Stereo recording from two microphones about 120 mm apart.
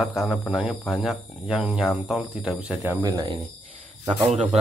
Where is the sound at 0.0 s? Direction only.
5° right (ahead or behind).